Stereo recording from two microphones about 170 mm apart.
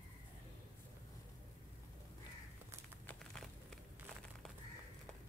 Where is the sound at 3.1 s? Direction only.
5° left (ahead or behind).